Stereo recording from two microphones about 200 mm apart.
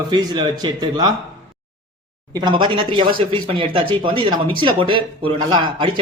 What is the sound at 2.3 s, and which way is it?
Speech, 20° right (ahead or behind).